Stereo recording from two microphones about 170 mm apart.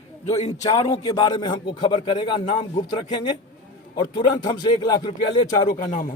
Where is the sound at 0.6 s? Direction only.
25° left (ahead or behind).